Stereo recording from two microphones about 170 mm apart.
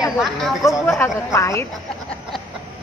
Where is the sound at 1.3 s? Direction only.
15° left (ahead or behind).